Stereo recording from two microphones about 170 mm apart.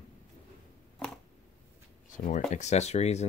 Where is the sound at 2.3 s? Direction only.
45° left (ahead or behind).